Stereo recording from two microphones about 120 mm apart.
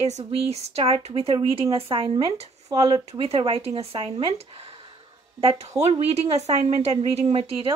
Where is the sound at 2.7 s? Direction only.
40° right (ahead or behind).